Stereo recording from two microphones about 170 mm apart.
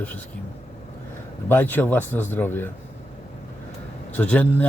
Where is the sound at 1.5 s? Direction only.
10° left (ahead or behind).